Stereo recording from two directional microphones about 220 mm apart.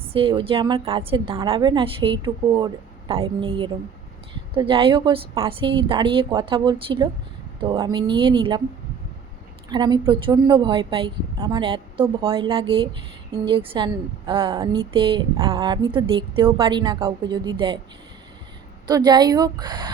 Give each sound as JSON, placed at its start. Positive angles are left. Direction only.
{"t": 0.0, "sound": "a woman's voice", "side_deg": -25}
{"t": 9.7, "sound": "a woman's voice", "side_deg": -20}
{"t": 18.9, "sound": "a woman's voice", "side_deg": -20}